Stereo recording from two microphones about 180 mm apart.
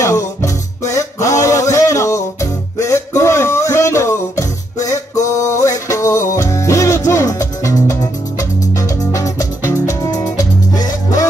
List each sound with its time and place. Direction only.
0.0 s music: 15° left (ahead or behind)